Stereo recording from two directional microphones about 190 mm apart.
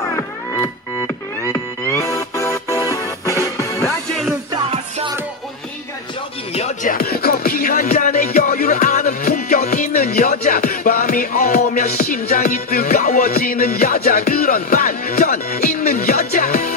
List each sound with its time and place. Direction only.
1.5 s music: 15° left (ahead or behind)
4.6 s music: 30° right (ahead or behind)
6.5 s music: 40° left (ahead or behind)